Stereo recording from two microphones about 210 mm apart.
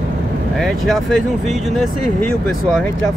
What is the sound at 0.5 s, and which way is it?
Speech, centre (ahead or behind).